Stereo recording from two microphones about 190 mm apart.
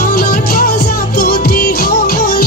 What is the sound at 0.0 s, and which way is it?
Music, 50° left (ahead or behind).